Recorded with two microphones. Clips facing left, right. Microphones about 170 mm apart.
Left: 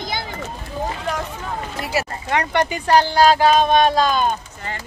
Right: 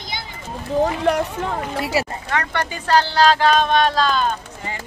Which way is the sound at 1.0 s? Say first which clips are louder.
Right 7 dB; 70° right (ahead or behind).